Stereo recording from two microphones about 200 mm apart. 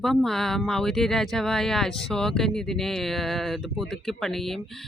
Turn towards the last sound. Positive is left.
turn(degrees=0)  # may be behind; listen again after turning